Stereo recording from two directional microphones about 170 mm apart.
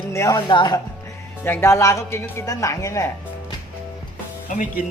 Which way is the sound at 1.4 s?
15° left (ahead or behind).